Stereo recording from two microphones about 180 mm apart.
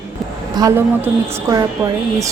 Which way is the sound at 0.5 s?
15° right (ahead or behind).